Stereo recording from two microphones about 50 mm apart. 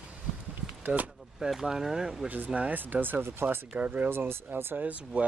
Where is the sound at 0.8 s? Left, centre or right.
Right.